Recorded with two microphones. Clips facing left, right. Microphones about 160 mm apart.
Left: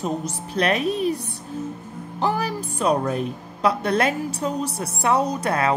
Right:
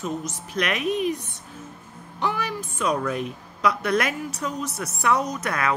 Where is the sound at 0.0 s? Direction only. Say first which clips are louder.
Left 3 dB; 30° left (ahead or behind).